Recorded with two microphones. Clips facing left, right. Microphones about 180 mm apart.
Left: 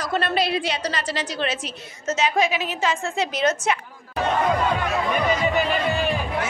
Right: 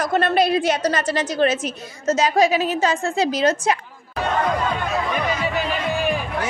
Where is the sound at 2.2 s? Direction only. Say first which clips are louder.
Right 4 dB; 40° right (ahead or behind).